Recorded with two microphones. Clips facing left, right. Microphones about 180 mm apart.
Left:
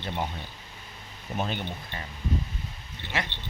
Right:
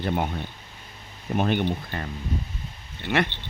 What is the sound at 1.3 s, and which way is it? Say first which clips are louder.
Speech: right 8 dB; 60° right (ahead or behind).